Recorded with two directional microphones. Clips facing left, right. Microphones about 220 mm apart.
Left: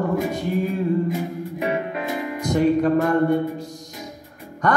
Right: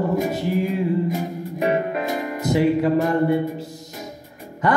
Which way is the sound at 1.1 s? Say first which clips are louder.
Even; 40° right (ahead or behind).